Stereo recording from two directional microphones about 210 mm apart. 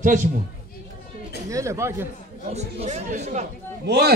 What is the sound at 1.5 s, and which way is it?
Speech, 15° right (ahead or behind).